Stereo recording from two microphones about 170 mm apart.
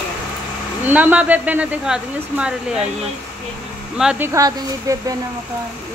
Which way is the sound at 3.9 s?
10° right (ahead or behind).